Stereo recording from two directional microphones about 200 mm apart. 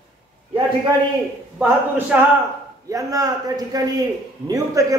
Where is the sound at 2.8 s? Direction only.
15° right (ahead or behind).